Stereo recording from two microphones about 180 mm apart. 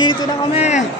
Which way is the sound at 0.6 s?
40° left (ahead or behind).